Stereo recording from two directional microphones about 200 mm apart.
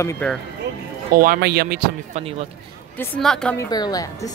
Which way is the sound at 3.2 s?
5° left (ahead or behind).